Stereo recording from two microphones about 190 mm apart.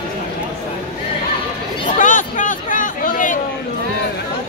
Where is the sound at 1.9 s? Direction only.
45° left (ahead or behind).